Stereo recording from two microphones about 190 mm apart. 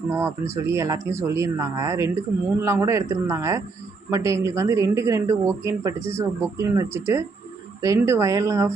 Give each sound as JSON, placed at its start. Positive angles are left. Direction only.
{"t": 0.1, "sound": "speech", "side_deg": -15}